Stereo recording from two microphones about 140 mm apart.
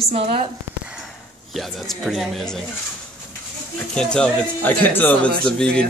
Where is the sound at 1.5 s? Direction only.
Centre (ahead or behind).